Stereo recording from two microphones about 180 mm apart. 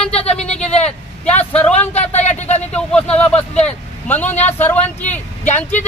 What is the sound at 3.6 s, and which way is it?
A man's voice, 10° left (ahead or behind).